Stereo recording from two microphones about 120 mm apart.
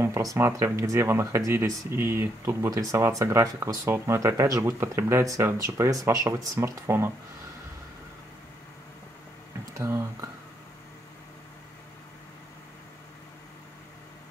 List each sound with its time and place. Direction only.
0.0 s speech: 25° right (ahead or behind)
9.8 s speech: 25° right (ahead or behind)